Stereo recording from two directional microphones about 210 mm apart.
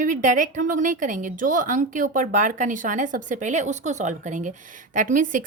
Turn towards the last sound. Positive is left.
turn(degrees=-40)  # may be behind; listen again after turning